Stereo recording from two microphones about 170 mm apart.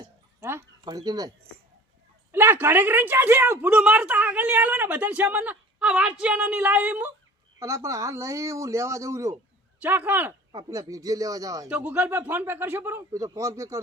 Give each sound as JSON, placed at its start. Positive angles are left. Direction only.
{"t": 0.3, "sound": "a sound", "side_deg": -15}
{"t": 2.3, "sound": "a man's voice", "side_deg": -15}
{"t": 11.7, "sound": "speech", "side_deg": -10}